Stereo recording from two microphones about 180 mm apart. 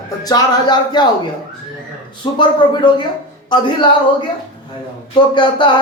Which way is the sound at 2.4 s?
25° left (ahead or behind).